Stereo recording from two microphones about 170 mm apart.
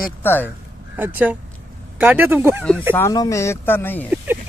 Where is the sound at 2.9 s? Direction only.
20° left (ahead or behind).